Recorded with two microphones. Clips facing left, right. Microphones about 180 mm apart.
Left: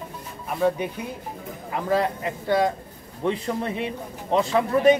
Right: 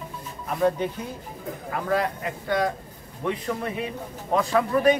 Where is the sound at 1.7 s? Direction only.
25° left (ahead or behind).